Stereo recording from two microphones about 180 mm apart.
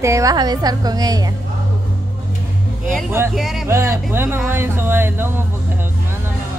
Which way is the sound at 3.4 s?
Centre (ahead or behind).